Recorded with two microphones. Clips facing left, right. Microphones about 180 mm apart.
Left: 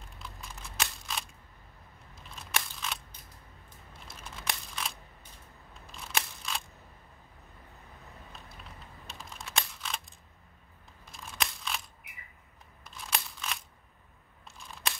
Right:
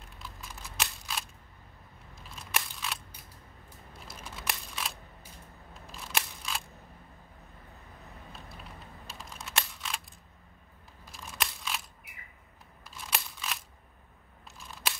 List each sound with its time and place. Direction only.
0.2 s a sound: centre (ahead or behind)
2.5 s scissors: 5° right (ahead or behind)
4.1 s computer keyboard: centre (ahead or behind)
5.9 s camera: centre (ahead or behind)
9.0 s computer keyboard: centre (ahead or behind)
11.1 s scissors: centre (ahead or behind)
14.8 s scissors: 5° right (ahead or behind)